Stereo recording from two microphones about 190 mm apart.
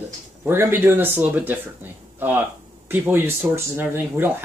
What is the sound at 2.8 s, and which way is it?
Speech, 10° right (ahead or behind).